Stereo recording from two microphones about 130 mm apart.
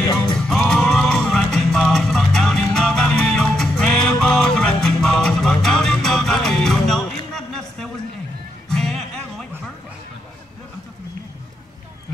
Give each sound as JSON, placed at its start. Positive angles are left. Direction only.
{"t": 0.0, "sound": "music", "side_deg": 30}
{"t": 0.4, "sound": "music", "side_deg": 5}